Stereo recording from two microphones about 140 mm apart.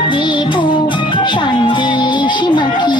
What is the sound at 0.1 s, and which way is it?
Music, 35° left (ahead or behind).